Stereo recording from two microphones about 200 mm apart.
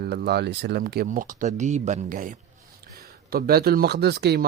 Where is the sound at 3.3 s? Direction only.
50° right (ahead or behind).